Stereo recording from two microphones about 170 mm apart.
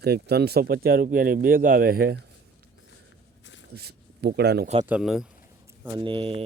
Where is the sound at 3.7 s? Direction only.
70° right (ahead or behind).